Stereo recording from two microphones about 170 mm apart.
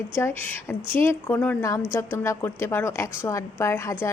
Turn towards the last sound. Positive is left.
turn(degrees=15)  # may be behind; listen again after turning